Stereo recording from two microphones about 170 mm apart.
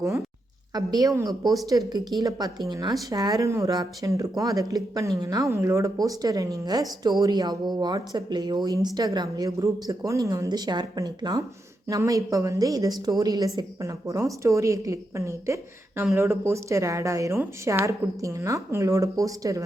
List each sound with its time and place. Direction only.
0.7 s a woman's voice: 20° right (ahead or behind)